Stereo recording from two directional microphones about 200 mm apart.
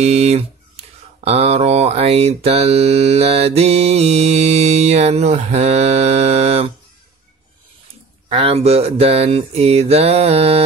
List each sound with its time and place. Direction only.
0.0 s speech: 30° right (ahead or behind)
8.3 s speech: 30° right (ahead or behind)